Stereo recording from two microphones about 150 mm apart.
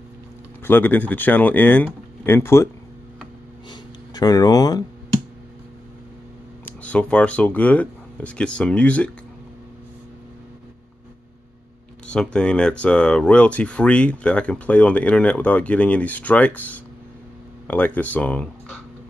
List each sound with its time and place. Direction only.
0.7 s speech: 10° left (ahead or behind)
4.1 s speech: 25° left (ahead or behind)
6.8 s speech: 10° left (ahead or behind)
12.1 s speech: 5° left (ahead or behind)